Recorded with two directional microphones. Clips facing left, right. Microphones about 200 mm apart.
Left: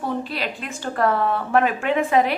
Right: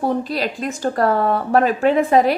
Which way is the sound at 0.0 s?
40° right (ahead or behind).